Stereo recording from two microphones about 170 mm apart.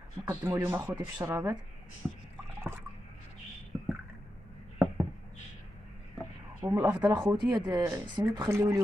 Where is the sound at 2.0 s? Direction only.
5° right (ahead or behind).